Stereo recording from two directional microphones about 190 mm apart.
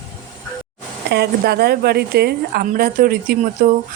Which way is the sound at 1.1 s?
60° right (ahead or behind).